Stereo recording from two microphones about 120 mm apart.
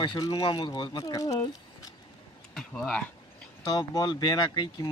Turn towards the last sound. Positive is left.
turn(degrees=35)  # may be behind; listen again after turning